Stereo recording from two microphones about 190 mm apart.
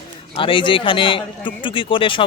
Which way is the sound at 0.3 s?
25° left (ahead or behind).